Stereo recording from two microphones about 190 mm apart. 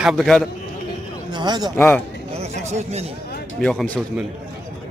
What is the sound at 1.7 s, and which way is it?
Speech, 10° left (ahead or behind).